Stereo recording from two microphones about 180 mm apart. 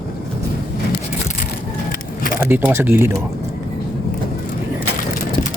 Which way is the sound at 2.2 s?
50° left (ahead or behind).